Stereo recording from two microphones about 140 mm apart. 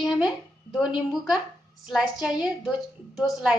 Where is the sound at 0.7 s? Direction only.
5° right (ahead or behind).